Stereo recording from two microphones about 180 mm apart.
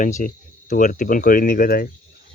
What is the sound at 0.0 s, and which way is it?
Speech, 45° left (ahead or behind).